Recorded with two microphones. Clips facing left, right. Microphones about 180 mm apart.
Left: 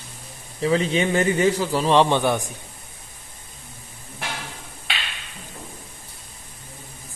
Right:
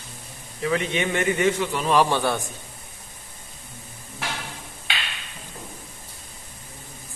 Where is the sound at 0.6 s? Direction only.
30° left (ahead or behind).